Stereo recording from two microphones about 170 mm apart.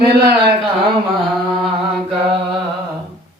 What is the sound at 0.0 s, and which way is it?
Speech, 70° right (ahead or behind).